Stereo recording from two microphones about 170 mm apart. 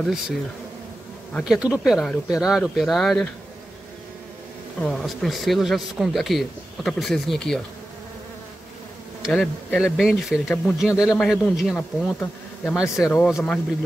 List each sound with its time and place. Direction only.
0.0 s speech: centre (ahead or behind)
4.8 s speech: centre (ahead or behind)
9.2 s bee: centre (ahead or behind)
9.9 s speech: 5° right (ahead or behind)